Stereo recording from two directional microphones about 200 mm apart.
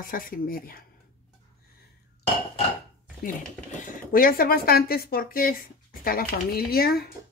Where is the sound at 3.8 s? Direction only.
45° left (ahead or behind).